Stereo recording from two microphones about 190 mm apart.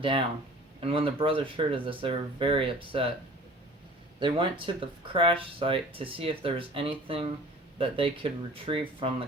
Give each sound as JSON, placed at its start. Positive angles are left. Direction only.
{"t": 0.8, "sound": "speech", "side_deg": -30}
{"t": 4.2, "sound": "speech", "side_deg": -25}